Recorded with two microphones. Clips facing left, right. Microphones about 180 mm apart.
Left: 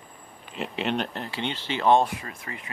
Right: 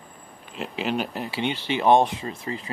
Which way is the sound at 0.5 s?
Centre (ahead or behind).